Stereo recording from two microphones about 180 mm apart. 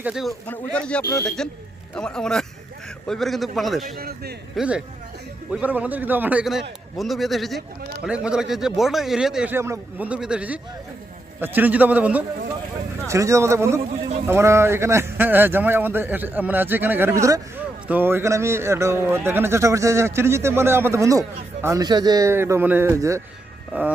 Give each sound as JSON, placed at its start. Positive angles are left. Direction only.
{"t": 0.0, "sound": "a man's voice", "side_deg": -5}
{"t": 0.4, "sound": "a man's voice", "side_deg": 10}
{"t": 3.9, "sound": "a man's voice", "side_deg": -60}
{"t": 4.5, "sound": "a man's voice", "side_deg": -5}